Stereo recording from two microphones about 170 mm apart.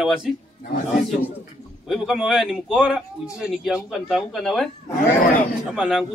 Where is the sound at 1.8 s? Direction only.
Centre (ahead or behind).